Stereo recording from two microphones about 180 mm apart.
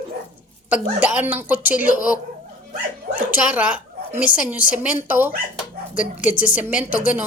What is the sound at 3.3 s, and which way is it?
A woman's voice, 10° right (ahead or behind).